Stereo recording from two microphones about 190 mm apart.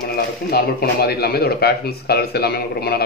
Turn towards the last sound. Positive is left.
turn(degrees=55)  # may be behind; listen again after turning